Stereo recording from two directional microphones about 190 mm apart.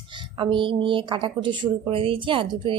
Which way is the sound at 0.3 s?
25° right (ahead or behind).